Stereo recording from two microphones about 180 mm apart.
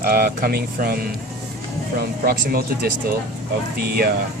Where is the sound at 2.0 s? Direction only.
60° right (ahead or behind).